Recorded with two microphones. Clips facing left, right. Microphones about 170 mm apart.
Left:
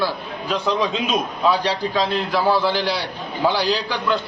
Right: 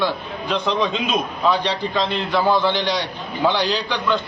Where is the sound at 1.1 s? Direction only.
10° left (ahead or behind).